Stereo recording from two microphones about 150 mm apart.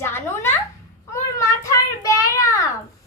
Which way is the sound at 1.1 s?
20° left (ahead or behind).